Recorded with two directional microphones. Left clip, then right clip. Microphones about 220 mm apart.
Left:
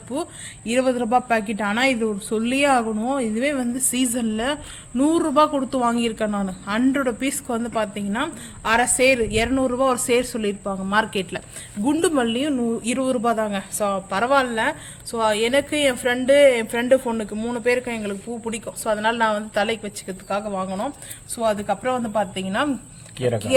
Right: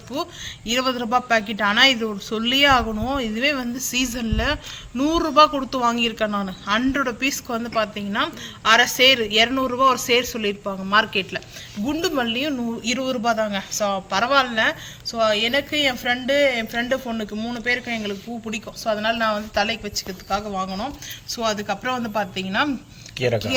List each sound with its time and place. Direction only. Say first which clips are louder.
0.1 s a woman's voice: right 1 dB; 35° left (ahead or behind)
15.1 s a woman's voice: even; 45° left (ahead or behind)